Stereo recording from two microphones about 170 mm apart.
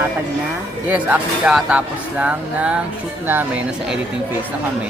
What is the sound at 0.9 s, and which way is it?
Speech, 10° right (ahead or behind).